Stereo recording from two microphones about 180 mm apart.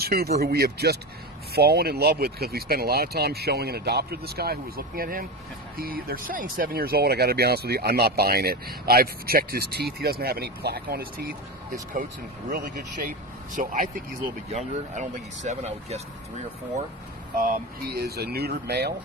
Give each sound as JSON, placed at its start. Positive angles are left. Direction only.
{"t": 0.0, "sound": "speech", "side_deg": -60}
{"t": 13.6, "sound": "speech", "side_deg": -45}
{"t": 17.4, "sound": "speech", "side_deg": -60}